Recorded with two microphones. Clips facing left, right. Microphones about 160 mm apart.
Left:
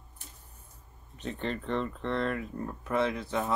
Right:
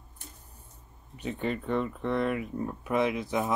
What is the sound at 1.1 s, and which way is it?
Speech, 10° right (ahead or behind).